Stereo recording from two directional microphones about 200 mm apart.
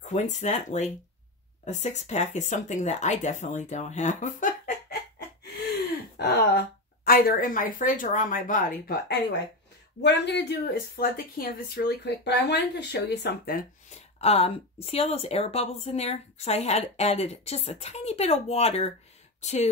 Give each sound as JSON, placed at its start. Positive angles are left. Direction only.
{"t": 0.1, "sound": "speech", "side_deg": 35}
{"t": 5.4, "sound": "gasp", "side_deg": 55}
{"t": 7.1, "sound": "speech", "side_deg": 45}
{"t": 10.0, "sound": "speech", "side_deg": 60}
{"t": 13.9, "sound": "speech", "side_deg": 30}